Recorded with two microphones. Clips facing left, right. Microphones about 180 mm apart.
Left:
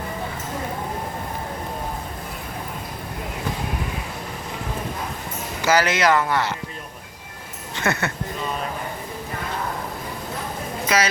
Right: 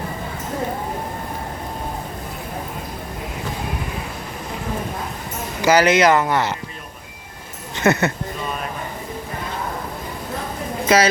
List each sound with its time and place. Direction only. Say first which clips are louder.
5.6 s speech: right 5 dB; 20° right (ahead or behind)
7.8 s speech: right 7 dB; 20° right (ahead or behind)
10.8 s speech: right 6 dB; 30° right (ahead or behind)